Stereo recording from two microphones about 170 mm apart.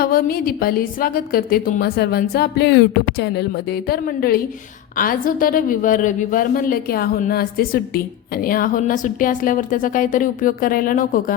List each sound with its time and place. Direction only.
0.0 s a woman's voice: 60° left (ahead or behind)